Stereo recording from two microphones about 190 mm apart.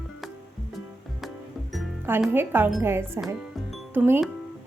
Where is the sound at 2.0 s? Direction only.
10° right (ahead or behind).